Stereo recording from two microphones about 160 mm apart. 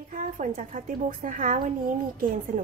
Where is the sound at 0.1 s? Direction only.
50° right (ahead or behind).